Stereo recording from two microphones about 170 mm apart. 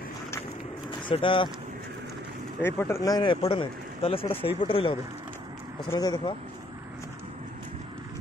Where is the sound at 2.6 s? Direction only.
15° left (ahead or behind).